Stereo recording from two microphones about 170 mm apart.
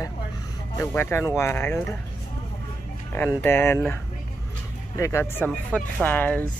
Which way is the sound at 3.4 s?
15° left (ahead or behind).